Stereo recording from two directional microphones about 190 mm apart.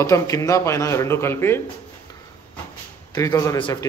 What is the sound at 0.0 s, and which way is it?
A man's voice, 15° left (ahead or behind).